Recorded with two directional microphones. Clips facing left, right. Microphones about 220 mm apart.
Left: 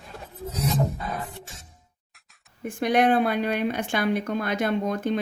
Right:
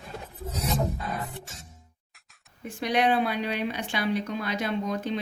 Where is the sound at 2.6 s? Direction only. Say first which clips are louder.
Left 4 dB; 50° left (ahead or behind).